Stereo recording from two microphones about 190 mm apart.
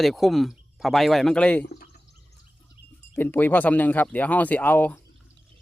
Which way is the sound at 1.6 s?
50° left (ahead or behind).